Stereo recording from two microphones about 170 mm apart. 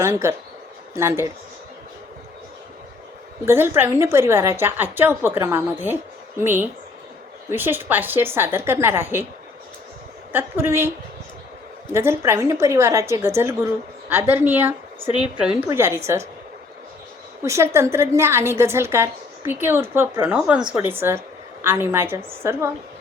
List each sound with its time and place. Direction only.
0.0 s a woman's voice: 15° right (ahead or behind)
3.4 s a woman's voice: 15° right (ahead or behind)
10.3 s a woman's voice: 15° right (ahead or behind)
11.9 s a woman's voice: 15° right (ahead or behind)
17.4 s a woman's voice: 15° right (ahead or behind)